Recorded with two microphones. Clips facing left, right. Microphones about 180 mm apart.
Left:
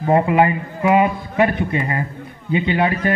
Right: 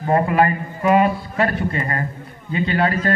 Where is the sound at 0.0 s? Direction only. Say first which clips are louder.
Left 2 dB; 15° left (ahead or behind).